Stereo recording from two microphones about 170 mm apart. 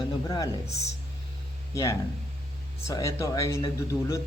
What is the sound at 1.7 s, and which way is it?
A man's voice, 20° left (ahead or behind).